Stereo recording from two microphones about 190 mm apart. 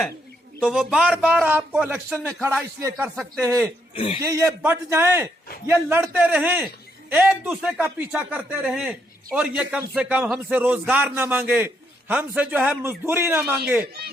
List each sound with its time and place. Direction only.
0.6 s a man's voice: centre (ahead or behind)
3.9 s speech: 30° left (ahead or behind)
4.2 s a man's voice: 15° right (ahead or behind)